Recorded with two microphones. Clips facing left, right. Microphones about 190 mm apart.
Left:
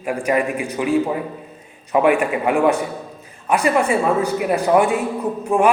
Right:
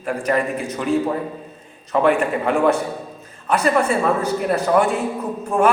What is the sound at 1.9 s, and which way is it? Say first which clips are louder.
A man's voice: left 1 dB; 10° left (ahead or behind).